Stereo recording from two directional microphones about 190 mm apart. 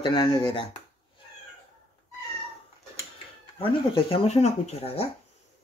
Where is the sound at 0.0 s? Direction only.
25° left (ahead or behind).